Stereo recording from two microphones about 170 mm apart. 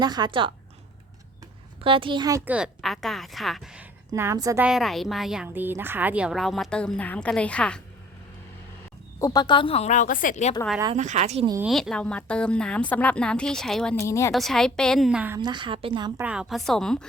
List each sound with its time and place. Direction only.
0.0 s speech: 25° right (ahead or behind)
1.8 s speech: 30° right (ahead or behind)
2.4 s speech: 5° right (ahead or behind)
4.1 s a woman's voice: 15° right (ahead or behind)
4.6 s speech: centre (ahead or behind)
9.1 s speech: 20° left (ahead or behind); by 10.5 s 50° left (ahead or behind)
10.9 s speech: 45° right (ahead or behind)
11.6 s speech: centre (ahead or behind)
14.0 s speech: 20° left (ahead or behind)
14.3 s speech: centre (ahead or behind)
15.4 s speech: 25° right (ahead or behind)
16.1 s speech: 5° right (ahead or behind)